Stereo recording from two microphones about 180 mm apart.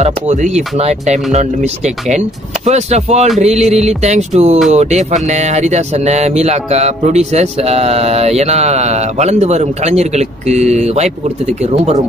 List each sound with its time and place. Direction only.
0.0 s speech: 40° right (ahead or behind)